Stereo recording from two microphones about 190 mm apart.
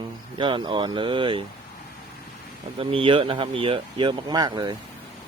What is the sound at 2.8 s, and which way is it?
Speech, 30° right (ahead or behind).